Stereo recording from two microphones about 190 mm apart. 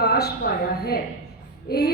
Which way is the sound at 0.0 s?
55° left (ahead or behind).